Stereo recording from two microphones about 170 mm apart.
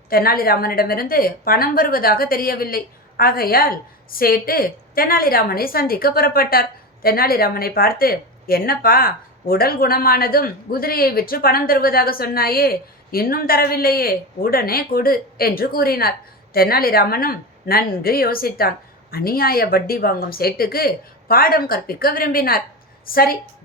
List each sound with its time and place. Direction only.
0.1 s a woman's voice: 60° left (ahead or behind)